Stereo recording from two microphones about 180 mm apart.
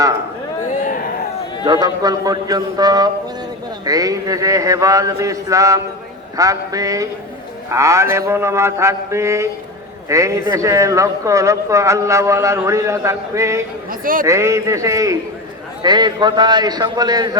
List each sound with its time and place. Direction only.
1.6 s a man's voice: 20° right (ahead or behind)
14.0 s a man's voice: 50° right (ahead or behind)
14.3 s a man's voice: 15° right (ahead or behind)